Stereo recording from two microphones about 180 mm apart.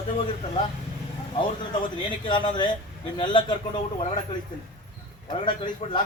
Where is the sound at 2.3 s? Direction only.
25° left (ahead or behind).